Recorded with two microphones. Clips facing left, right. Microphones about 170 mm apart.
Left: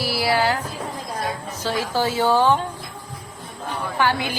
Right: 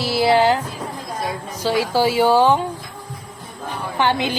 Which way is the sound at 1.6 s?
15° right (ahead or behind).